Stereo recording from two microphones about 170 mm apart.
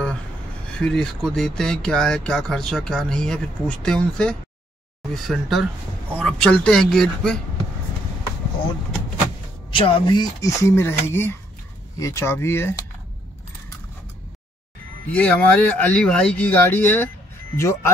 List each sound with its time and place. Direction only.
0.7 s speech: 5° left (ahead or behind)
9.8 s speech: 30° left (ahead or behind); by 12.8 s 15° left (ahead or behind)
15.0 s speech: 10° left (ahead or behind)